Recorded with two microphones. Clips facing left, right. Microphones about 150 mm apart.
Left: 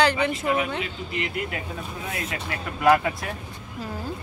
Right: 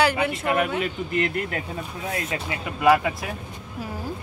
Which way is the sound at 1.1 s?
45° right (ahead or behind).